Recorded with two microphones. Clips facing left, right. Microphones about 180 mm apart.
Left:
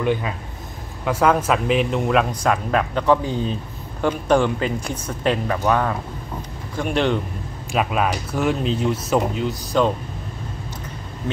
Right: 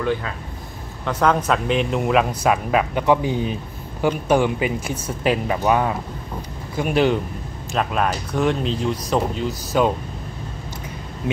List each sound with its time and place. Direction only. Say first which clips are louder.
0.0 s speech: left 1 dB; 15° left (ahead or behind)
1.0 s speech: left 1 dB; 5° left (ahead or behind)
7.7 s speech: left 1 dB; 5° left (ahead or behind)